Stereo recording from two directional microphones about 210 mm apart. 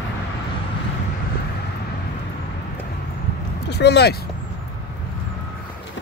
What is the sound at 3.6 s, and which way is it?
Speech, 55° left (ahead or behind).